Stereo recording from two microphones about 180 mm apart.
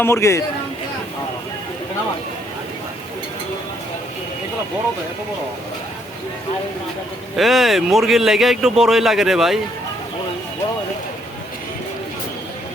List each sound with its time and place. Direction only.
0.0 s speech: 15° left (ahead or behind)
7.3 s speech: centre (ahead or behind)